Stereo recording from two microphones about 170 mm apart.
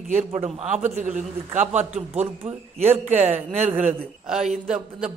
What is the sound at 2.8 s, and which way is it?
Speech, 40° right (ahead or behind).